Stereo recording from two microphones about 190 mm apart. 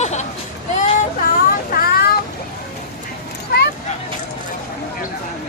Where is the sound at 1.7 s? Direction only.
50° left (ahead or behind).